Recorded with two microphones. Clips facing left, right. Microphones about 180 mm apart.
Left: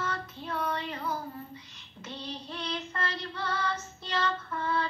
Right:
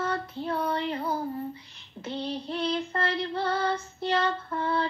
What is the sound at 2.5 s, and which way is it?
Child singing, 30° right (ahead or behind).